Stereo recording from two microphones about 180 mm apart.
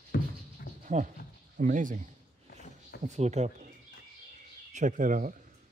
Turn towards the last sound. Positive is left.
turn(degrees=-50)  # may be behind; listen again after turning